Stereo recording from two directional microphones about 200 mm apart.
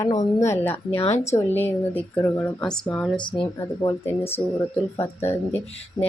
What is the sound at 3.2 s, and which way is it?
Speech, 25° left (ahead or behind).